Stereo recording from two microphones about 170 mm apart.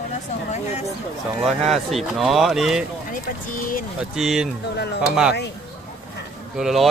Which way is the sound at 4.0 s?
5° right (ahead or behind).